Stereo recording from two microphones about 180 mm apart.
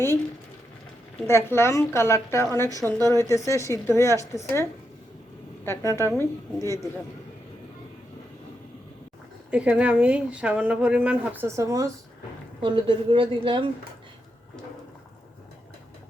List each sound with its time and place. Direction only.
1.3 s a woman's voice: 15° left (ahead or behind)
3.0 s speech: 20° right (ahead or behind)
3.2 s a woman's voice: 15° left (ahead or behind)
5.6 s a woman's voice: 15° left (ahead or behind)
9.5 s speech: 5° right (ahead or behind)
12.6 s speech: 30° right (ahead or behind)